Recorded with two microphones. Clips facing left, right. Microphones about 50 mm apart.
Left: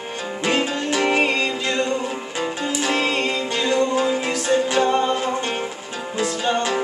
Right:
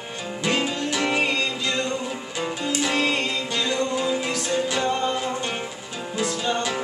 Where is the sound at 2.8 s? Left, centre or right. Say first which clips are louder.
Left 2 dB; centre.